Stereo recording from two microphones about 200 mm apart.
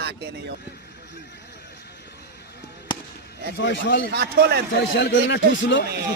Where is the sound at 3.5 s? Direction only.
65° left (ahead or behind).